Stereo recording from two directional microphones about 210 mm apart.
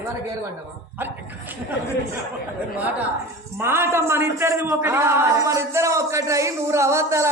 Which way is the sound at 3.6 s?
10° right (ahead or behind).